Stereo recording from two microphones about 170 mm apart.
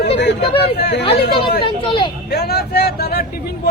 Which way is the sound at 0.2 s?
90° left.